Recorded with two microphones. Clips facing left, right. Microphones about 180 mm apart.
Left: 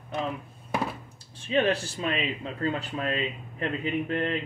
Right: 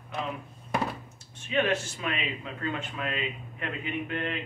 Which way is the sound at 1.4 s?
35° left (ahead or behind).